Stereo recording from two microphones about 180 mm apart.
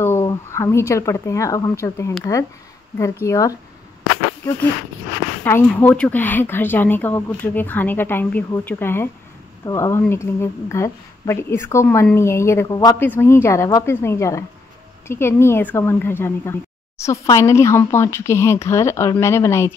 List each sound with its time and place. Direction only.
0.0 s a woman's voice: 15° left (ahead or behind)
3.3 s a woman's voice: 20° left (ahead or behind)
5.4 s a woman's voice: 10° left (ahead or behind)